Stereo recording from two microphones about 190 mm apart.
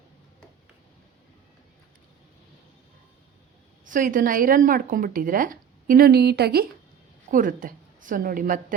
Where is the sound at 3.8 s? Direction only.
45° right (ahead or behind).